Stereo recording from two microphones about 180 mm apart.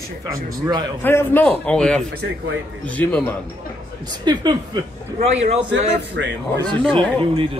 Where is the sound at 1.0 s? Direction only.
10° left (ahead or behind).